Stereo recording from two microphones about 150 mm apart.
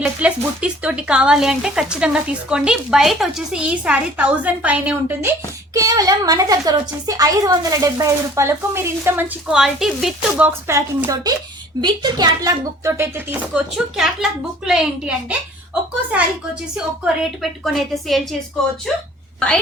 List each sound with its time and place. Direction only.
0.0 s speech: 10° right (ahead or behind)
5.7 s a woman's voice: 25° right (ahead or behind); by 15.4 s 5° right (ahead or behind)
17.4 s a woman's voice: centre (ahead or behind)